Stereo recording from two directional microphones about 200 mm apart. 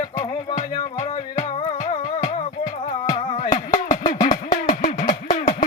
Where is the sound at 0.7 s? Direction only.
35° left (ahead or behind).